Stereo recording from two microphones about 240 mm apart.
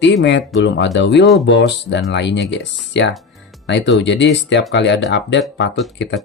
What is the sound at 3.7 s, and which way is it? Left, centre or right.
Speech, left.